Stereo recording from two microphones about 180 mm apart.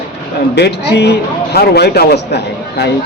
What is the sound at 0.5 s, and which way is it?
A man's voice, 65° left (ahead or behind).